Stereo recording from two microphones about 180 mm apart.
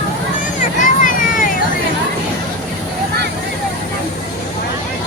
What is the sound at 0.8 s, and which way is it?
Vehicle, 45° left (ahead or behind).